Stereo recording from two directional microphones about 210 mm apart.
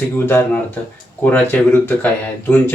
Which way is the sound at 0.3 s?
10° left (ahead or behind).